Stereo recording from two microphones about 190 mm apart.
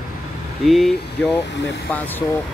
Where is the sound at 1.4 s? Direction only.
65° left (ahead or behind).